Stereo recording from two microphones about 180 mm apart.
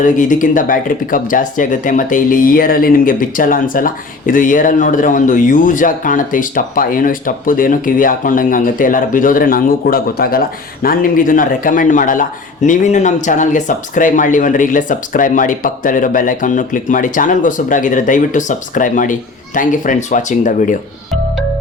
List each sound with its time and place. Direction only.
0.0 s speech: 45° left (ahead or behind)